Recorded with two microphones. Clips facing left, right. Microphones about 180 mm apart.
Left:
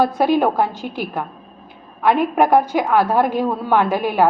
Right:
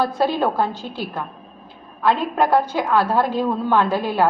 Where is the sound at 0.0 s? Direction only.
15° left (ahead or behind).